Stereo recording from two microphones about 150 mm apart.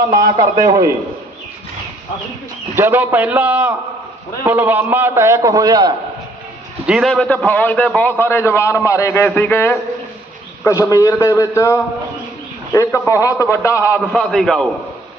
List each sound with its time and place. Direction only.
0.1 s a man's voice: 25° right (ahead or behind)
2.7 s a man's voice: 15° right (ahead or behind)
6.8 s a man's voice: centre (ahead or behind); by 14.0 s 20° left (ahead or behind)
14.1 s a man's voice: centre (ahead or behind)